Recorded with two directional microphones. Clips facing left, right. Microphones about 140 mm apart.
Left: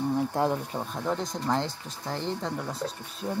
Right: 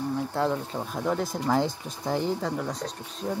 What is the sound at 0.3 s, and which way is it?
Speech, 15° left (ahead or behind).